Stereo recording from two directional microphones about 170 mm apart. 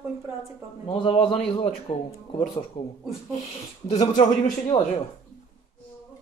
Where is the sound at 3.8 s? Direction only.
40° left (ahead or behind).